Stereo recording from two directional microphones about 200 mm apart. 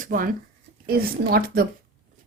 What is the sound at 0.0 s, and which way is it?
Speech, 45° right (ahead or behind).